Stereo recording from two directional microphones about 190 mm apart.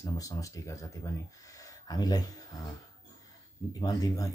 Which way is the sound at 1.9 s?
20° left (ahead or behind).